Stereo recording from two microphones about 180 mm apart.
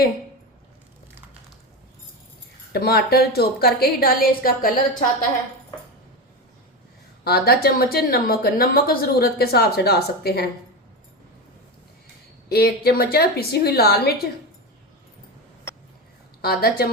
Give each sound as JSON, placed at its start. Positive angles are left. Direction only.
{"t": 2.7, "sound": "a woman's voice", "side_deg": 60}
{"t": 7.3, "sound": "a woman's voice", "side_deg": 60}
{"t": 12.5, "sound": "a woman's voice", "side_deg": 60}
{"t": 16.4, "sound": "a woman's voice", "side_deg": 60}